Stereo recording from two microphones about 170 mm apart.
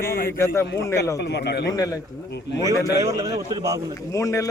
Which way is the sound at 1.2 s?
80° left.